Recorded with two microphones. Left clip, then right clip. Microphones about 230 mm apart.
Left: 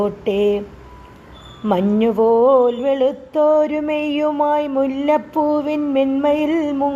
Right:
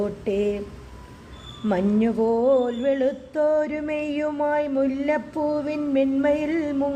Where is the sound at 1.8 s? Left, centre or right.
Left.